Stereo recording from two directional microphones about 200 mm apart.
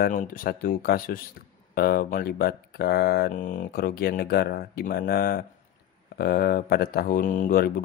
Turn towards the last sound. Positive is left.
turn(degrees=45)  # may be behind; listen again after turning